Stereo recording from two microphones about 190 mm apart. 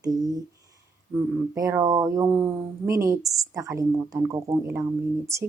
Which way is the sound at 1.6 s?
15° right (ahead or behind).